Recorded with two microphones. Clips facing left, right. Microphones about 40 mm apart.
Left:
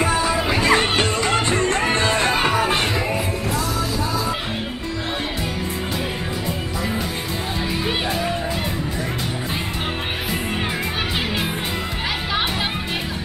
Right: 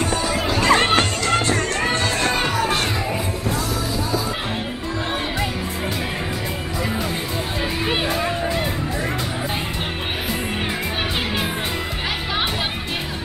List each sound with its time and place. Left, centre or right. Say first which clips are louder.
0.0 s music: left 2 dB; centre
0.7 s music: right 2 dB; centre
1.0 s music: even; centre
7.8 s music: right 2 dB; centre